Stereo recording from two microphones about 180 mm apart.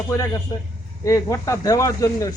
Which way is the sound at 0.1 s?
15° left (ahead or behind).